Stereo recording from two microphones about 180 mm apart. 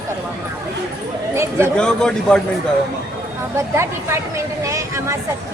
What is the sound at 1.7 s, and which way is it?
Speech, 5° left (ahead or behind).